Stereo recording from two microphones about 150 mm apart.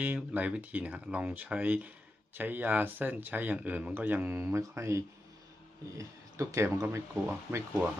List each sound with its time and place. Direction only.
0.0 s speech: 10° right (ahead or behind)